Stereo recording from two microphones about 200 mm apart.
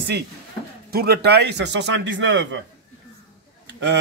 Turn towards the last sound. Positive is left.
turn(degrees=-60)  # may be behind; listen again after turning